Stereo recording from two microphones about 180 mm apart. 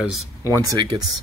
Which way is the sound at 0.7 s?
20° right (ahead or behind).